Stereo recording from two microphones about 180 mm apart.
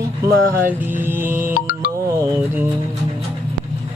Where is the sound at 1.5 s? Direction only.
55° left (ahead or behind).